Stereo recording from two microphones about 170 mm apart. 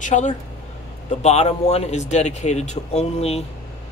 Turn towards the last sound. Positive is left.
turn(degrees=35)  # may be behind; listen again after turning